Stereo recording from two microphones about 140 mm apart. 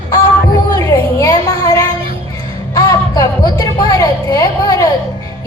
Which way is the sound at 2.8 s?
25° left (ahead or behind).